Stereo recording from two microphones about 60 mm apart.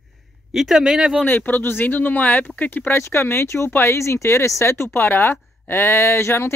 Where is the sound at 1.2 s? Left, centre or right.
Left.